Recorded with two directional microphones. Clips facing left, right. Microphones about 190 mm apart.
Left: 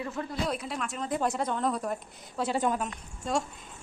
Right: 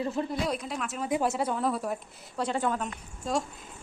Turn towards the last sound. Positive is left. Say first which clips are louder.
# even
turn(degrees=0)  # may be behind; listen again after turning